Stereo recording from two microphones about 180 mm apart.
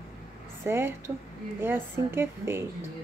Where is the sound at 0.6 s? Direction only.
15° right (ahead or behind).